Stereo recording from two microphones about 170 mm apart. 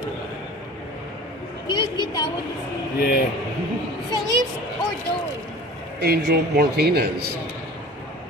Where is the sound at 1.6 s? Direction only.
25° left (ahead or behind).